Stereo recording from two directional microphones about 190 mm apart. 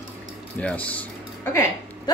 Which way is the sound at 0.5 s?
5° left (ahead or behind).